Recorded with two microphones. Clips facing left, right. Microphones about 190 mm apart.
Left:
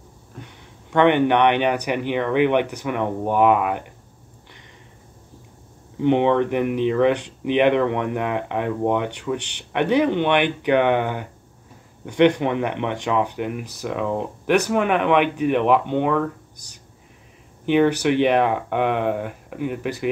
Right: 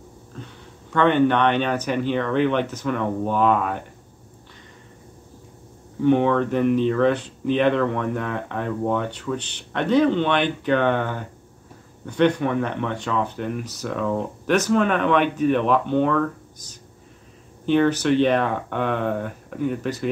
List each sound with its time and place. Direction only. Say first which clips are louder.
0.4 s speech: right 1 dB; 15° left (ahead or behind)
5.9 s speech: left 1 dB; 20° left (ahead or behind)